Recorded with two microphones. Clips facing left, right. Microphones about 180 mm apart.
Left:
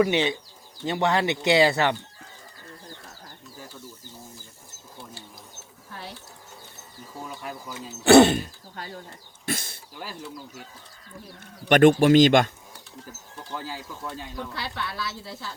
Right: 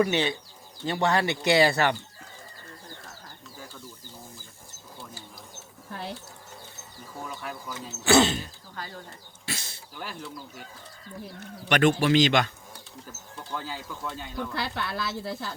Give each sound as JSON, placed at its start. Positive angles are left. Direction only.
{"t": 0.0, "sound": "speech", "side_deg": 20}
{"t": 7.3, "sound": "speech", "side_deg": 10}
{"t": 8.0, "sound": "speech", "side_deg": 60}
{"t": 9.5, "sound": "speech", "side_deg": 55}
{"t": 11.3, "sound": "speech", "side_deg": 50}
{"t": 13.5, "sound": "speech", "side_deg": 5}
{"t": 14.6, "sound": "speech", "side_deg": -55}